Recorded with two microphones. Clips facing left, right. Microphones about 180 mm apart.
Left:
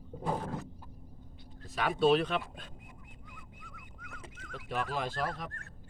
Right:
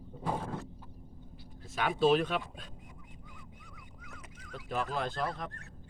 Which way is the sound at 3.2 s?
50° left (ahead or behind).